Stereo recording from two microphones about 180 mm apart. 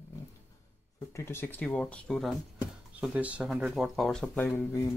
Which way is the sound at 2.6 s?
5° right (ahead or behind).